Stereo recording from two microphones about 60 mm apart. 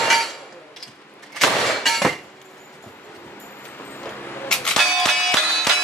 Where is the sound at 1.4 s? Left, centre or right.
Centre.